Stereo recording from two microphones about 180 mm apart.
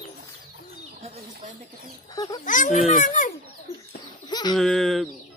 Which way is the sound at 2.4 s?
45° left (ahead or behind).